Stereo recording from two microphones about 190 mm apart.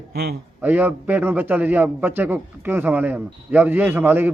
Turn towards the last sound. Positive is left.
turn(degrees=-10)  # may be behind; listen again after turning